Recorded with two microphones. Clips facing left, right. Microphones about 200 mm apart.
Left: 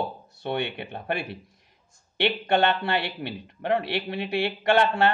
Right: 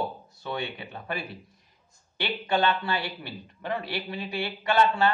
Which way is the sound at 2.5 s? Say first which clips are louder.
Left 1 dB; 65° left (ahead or behind).